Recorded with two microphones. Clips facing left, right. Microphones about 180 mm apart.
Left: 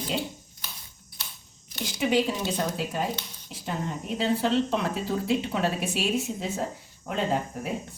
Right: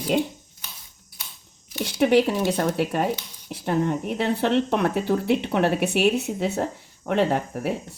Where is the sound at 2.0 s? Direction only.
65° right (ahead or behind).